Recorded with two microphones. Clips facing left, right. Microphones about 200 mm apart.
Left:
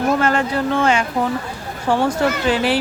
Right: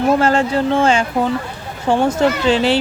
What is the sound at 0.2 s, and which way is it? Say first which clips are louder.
Speech: right 3 dB; 30° right (ahead or behind).